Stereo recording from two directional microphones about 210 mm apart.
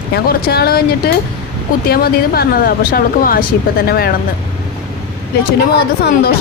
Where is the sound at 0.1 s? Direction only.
45° left (ahead or behind).